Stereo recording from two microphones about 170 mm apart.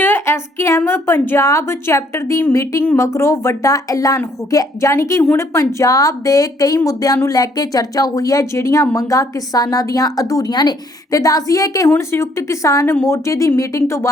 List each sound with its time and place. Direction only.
0.0 s a woman's voice: 15° left (ahead or behind)